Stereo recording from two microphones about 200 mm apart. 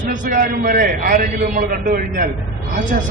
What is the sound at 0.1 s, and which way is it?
A man's voice, 45° right (ahead or behind).